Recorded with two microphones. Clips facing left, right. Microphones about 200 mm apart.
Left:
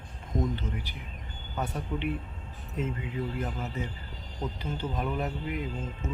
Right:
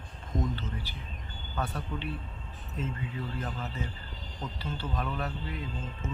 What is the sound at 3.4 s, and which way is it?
Speech, 15° left (ahead or behind).